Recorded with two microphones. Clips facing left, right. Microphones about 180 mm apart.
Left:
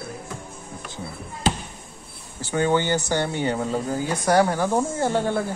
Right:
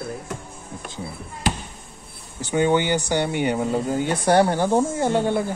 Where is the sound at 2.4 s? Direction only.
20° right (ahead or behind).